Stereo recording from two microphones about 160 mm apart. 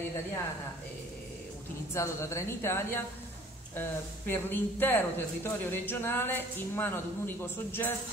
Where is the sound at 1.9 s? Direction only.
20° left (ahead or behind).